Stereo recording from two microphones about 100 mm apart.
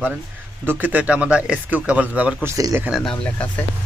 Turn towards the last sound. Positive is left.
turn(degrees=5)  # may be behind; listen again after turning